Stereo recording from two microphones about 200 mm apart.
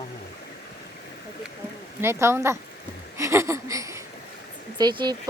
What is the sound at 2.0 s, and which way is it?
Speech, 10° right (ahead or behind).